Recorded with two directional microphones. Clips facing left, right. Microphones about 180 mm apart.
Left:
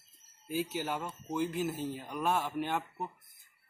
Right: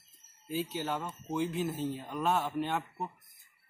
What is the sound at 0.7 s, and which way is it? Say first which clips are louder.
Speech: right 1 dB; 10° left (ahead or behind).